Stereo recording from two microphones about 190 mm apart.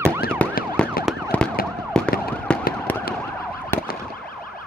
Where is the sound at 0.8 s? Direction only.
5° left (ahead or behind).